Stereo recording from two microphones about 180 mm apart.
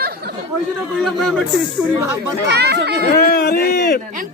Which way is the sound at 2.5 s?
65° right (ahead or behind).